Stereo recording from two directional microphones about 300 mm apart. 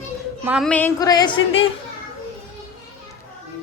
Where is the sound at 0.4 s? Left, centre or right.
Centre.